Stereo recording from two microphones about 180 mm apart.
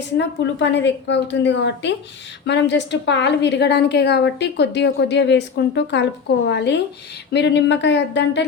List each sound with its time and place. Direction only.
0.2 s a woman's voice: 75° left (ahead or behind)